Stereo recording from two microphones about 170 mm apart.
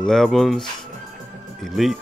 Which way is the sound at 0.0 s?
5° left (ahead or behind).